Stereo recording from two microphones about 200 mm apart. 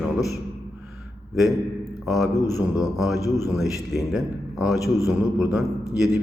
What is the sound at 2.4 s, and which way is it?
Speech, 15° left (ahead or behind).